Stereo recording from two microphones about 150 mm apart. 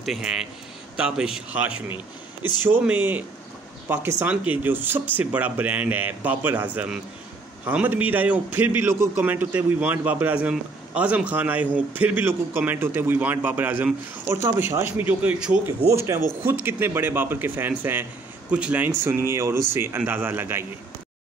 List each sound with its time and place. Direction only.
0.0 s a man's voice: 5° right (ahead or behind)
15.9 s a man's voice: 20° right (ahead or behind)